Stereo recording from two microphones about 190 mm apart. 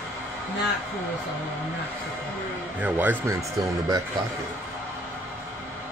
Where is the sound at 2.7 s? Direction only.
10° right (ahead or behind).